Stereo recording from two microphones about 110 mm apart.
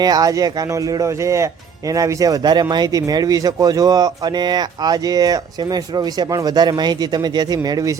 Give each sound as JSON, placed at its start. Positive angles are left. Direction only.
{"t": 0.0, "sound": "speech", "side_deg": -35}